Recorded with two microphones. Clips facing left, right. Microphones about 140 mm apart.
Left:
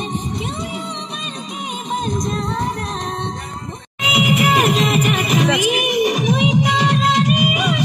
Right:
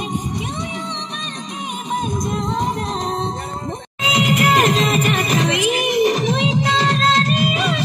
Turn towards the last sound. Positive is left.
turn(degrees=10)  # may be behind; listen again after turning